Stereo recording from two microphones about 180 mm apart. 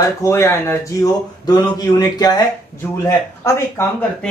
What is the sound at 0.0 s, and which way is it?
A man's voice, 15° left (ahead or behind).